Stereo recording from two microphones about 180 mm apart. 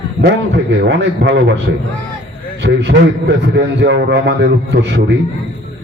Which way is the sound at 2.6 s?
75° right (ahead or behind).